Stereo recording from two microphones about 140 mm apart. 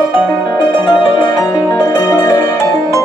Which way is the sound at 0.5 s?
30° left (ahead or behind).